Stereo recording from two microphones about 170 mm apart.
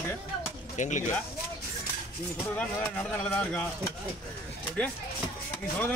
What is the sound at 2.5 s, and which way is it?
A man's voice, 5° left (ahead or behind).